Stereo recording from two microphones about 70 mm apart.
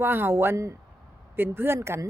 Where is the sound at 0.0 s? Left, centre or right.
Right.